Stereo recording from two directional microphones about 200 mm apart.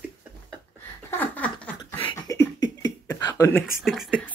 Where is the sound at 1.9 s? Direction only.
25° left (ahead or behind).